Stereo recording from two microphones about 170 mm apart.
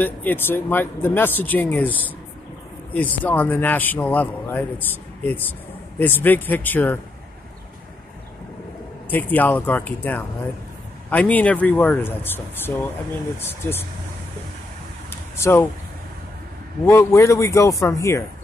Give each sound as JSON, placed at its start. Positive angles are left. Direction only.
{"t": 0.0, "sound": "a man's voice", "side_deg": 10}
{"t": 9.1, "sound": "a man's voice", "side_deg": 10}
{"t": 15.0, "sound": "a sound", "side_deg": 15}
{"t": 16.8, "sound": "a man's voice", "side_deg": 15}